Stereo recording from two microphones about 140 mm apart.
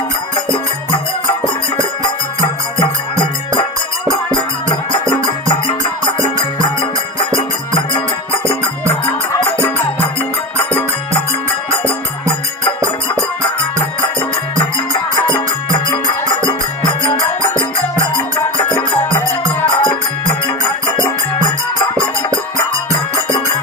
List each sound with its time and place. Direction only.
4.9 s music: 35° left (ahead or behind)
15.1 s music: 35° left (ahead or behind)
19.8 s music: 35° left (ahead or behind)